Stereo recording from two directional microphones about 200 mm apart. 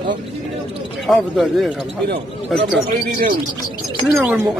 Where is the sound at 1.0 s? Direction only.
Centre (ahead or behind).